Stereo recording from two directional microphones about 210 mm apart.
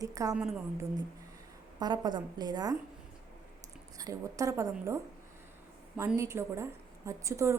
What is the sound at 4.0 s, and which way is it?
A woman's voice, 15° right (ahead or behind).